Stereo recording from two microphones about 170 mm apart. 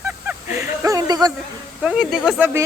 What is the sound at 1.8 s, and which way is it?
Speech, 5° right (ahead or behind).